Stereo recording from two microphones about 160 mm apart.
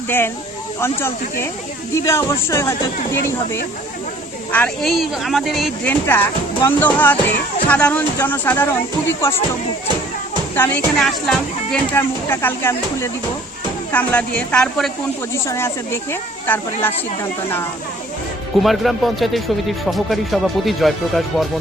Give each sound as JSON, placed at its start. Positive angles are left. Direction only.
{"t": 0.8, "sound": "speech", "side_deg": 15}
{"t": 4.5, "sound": "speech", "side_deg": 5}
{"t": 5.8, "sound": "speech", "side_deg": 10}
{"t": 10.5, "sound": "speech", "side_deg": 10}
{"t": 15.4, "sound": "speech", "side_deg": 15}
{"t": 18.6, "sound": "speech", "side_deg": 0}